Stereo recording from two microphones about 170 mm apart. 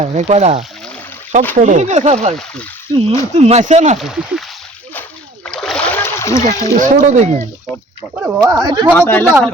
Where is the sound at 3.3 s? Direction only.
40° right (ahead or behind).